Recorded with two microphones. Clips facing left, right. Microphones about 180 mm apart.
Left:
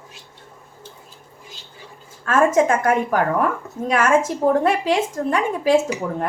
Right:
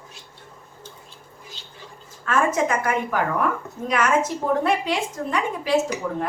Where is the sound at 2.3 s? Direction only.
45° left (ahead or behind).